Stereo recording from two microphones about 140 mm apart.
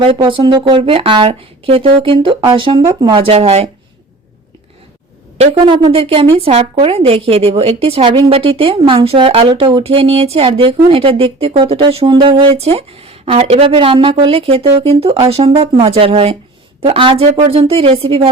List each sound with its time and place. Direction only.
0.0 s speech: 40° right (ahead or behind)
5.6 s speech: 35° right (ahead or behind)